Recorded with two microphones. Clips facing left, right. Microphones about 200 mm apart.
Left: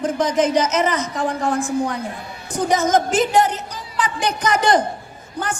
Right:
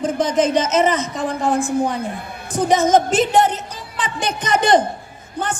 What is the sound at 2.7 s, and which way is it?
A woman's voice, 25° right (ahead or behind).